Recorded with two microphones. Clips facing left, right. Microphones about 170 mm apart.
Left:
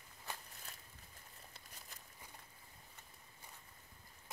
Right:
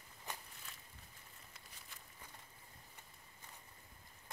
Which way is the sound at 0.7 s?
40° left (ahead or behind).